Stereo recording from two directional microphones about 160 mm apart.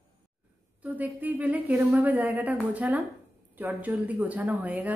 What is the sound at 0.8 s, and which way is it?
A woman's voice, 10° right (ahead or behind).